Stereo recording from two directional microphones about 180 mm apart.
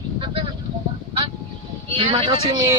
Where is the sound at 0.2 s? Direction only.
30° right (ahead or behind).